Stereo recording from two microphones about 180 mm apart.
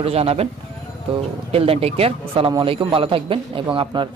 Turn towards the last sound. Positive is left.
turn(degrees=-25)  # may be behind; listen again after turning